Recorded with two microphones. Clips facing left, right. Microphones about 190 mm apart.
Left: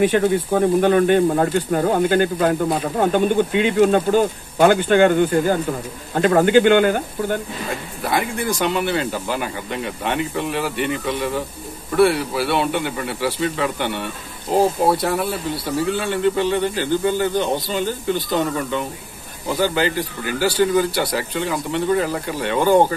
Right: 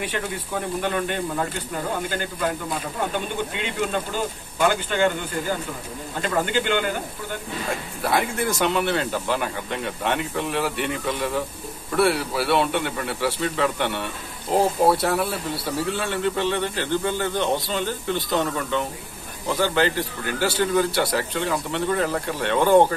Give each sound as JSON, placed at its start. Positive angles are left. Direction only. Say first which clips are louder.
{"t": 0.0, "sound": "speech", "louder": "left 12 dB", "side_deg": 45}
{"t": 8.0, "sound": "speech", "louder": "left 1 dB", "side_deg": 0}